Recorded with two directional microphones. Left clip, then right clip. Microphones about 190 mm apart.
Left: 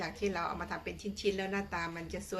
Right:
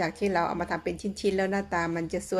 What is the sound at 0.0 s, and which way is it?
A woman's voice, 40° right (ahead or behind).